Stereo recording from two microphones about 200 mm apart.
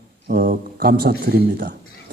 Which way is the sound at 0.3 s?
45° right (ahead or behind).